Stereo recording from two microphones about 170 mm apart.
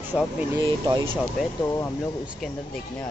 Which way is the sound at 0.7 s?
30° right (ahead or behind).